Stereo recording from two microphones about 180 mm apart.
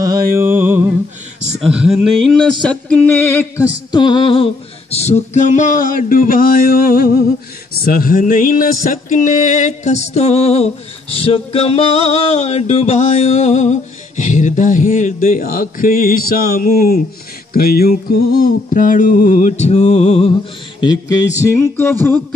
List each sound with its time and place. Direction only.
0.0 s music: 15° right (ahead or behind)
1.6 s speech: 5° right (ahead or behind)
2.2 s music: 5° left (ahead or behind)
3.9 s music: 25° left (ahead or behind)
20.8 s music: 20° left (ahead or behind)